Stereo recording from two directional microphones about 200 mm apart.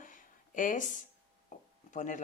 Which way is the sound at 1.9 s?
40° left (ahead or behind).